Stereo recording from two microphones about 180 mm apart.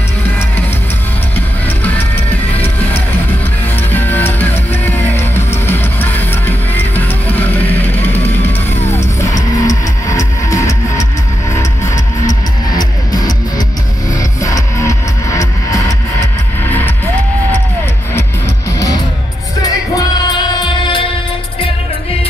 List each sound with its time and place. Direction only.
3.9 s music: 10° left (ahead or behind)
12.3 s music: 20° left (ahead or behind)
14.4 s music: 15° left (ahead or behind)
20.2 s music: 25° left (ahead or behind)